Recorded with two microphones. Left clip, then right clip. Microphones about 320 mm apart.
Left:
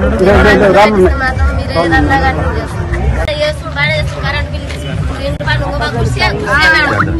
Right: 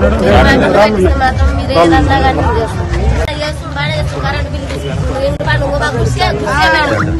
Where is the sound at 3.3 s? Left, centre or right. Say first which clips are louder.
Left 4 dB; centre.